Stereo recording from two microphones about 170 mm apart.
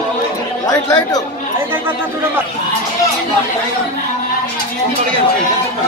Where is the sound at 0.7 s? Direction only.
20° left (ahead or behind).